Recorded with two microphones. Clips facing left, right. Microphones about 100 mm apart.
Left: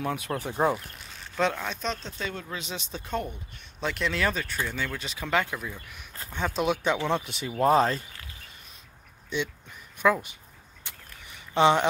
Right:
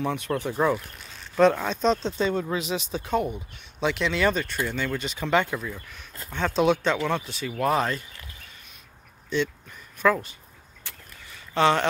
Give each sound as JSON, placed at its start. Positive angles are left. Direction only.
{"t": 0.0, "sound": "speech", "side_deg": 5}
{"t": 1.3, "sound": "speech", "side_deg": -10}
{"t": 1.8, "sound": "speech", "side_deg": -30}
{"t": 2.7, "sound": "speech", "side_deg": -5}
{"t": 7.0, "sound": "speech", "side_deg": 25}
{"t": 9.3, "sound": "speech", "side_deg": 15}
{"t": 10.8, "sound": "vehicle", "side_deg": 20}